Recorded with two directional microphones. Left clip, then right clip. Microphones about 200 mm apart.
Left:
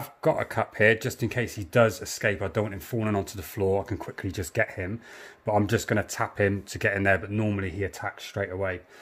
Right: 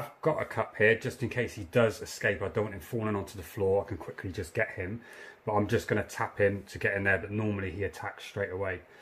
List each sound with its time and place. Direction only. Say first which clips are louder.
0.2 s speech: left 5 dB; 60° left (ahead or behind)